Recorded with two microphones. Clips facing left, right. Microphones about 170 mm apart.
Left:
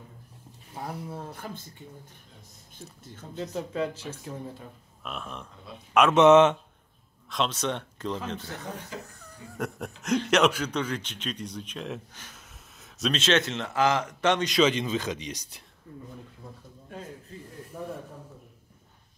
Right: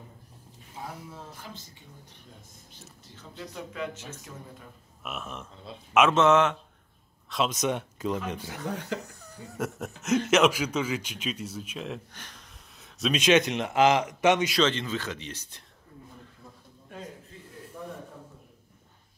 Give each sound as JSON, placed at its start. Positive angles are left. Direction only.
{"t": 1.1, "sound": "speech", "side_deg": 55}
{"t": 3.5, "sound": "speech", "side_deg": 35}
{"t": 5.0, "sound": "speech", "side_deg": -5}
{"t": 6.1, "sound": "speech", "side_deg": 20}
{"t": 7.2, "sound": "a man's voice", "side_deg": -5}
{"t": 8.7, "sound": "speech", "side_deg": -70}
{"t": 9.0, "sound": "speech", "side_deg": -5}
{"t": 13.1, "sound": "a man's voice", "side_deg": -15}
{"t": 14.6, "sound": "speech", "side_deg": 15}
{"t": 17.8, "sound": "a sound", "side_deg": 35}